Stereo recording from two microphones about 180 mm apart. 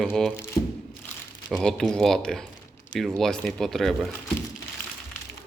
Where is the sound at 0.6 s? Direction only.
25° left (ahead or behind).